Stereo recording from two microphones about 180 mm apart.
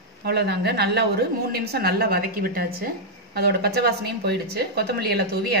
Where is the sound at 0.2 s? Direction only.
65° right (ahead or behind).